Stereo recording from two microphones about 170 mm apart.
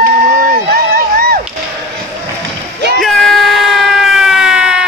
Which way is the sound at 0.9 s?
60° right (ahead or behind).